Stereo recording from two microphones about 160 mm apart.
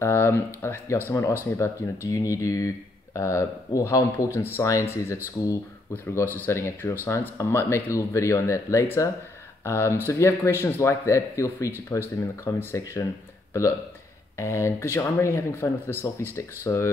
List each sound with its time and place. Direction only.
0.0 s speech: 15° left (ahead or behind)